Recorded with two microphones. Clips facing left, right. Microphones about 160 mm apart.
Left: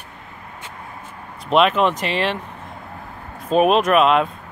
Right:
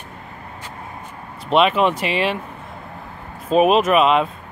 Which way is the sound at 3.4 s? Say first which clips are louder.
Right 1 dB; centre (ahead or behind).